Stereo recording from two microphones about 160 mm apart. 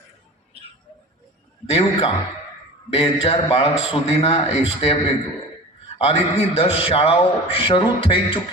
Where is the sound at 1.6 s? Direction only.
40° left (ahead or behind).